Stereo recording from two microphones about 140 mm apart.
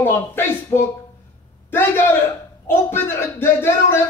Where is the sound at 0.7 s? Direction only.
30° left (ahead or behind).